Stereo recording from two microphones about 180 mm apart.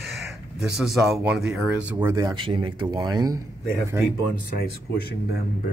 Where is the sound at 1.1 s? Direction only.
5° right (ahead or behind); by 3.3 s 20° right (ahead or behind).